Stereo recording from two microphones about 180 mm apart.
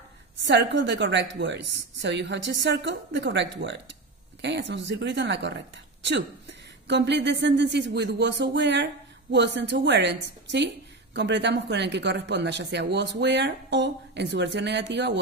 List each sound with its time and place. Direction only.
0.4 s speech: 75° right (ahead or behind)
6.9 s speech: 75° right (ahead or behind)